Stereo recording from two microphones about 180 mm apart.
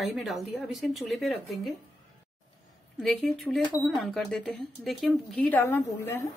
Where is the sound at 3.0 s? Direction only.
Centre (ahead or behind).